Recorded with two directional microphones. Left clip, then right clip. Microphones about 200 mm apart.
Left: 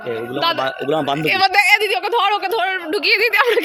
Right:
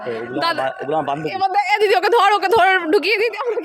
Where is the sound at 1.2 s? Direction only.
10° left (ahead or behind).